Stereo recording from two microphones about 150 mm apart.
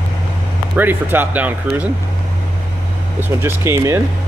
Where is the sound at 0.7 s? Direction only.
15° right (ahead or behind).